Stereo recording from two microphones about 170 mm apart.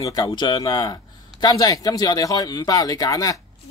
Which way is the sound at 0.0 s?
20° left (ahead or behind).